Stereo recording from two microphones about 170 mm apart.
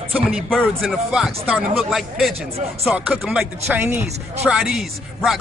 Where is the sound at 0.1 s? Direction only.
Centre (ahead or behind).